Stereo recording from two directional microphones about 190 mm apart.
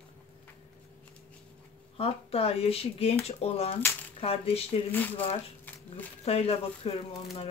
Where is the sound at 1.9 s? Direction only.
30° left (ahead or behind).